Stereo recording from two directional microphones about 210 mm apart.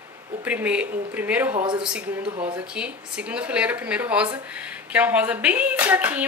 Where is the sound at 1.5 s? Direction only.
25° right (ahead or behind).